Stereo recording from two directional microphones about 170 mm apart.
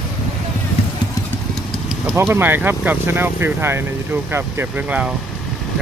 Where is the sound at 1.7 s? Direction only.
5° right (ahead or behind).